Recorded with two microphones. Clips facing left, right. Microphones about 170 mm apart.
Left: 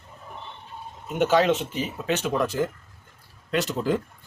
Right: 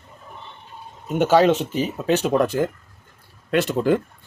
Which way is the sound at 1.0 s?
40° right (ahead or behind).